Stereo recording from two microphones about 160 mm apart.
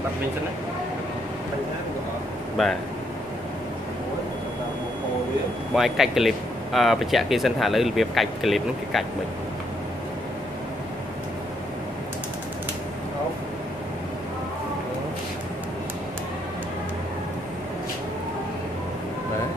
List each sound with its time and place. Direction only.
2.6 s speech: centre (ahead or behind)
5.8 s speech: centre (ahead or behind)